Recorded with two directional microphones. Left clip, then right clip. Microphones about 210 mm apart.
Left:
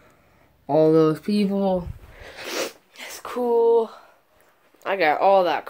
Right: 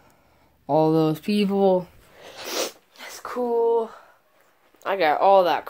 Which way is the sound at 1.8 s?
Centre (ahead or behind).